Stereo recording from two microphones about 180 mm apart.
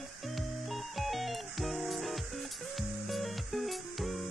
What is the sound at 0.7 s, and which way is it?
Music, centre (ahead or behind).